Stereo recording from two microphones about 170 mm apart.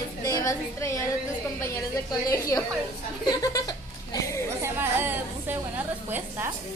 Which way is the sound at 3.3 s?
20° left (ahead or behind).